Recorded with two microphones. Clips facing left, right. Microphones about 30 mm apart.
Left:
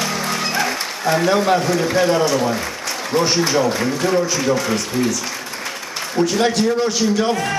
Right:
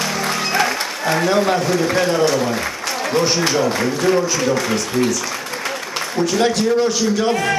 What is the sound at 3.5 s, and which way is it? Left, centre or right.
Speech, centre.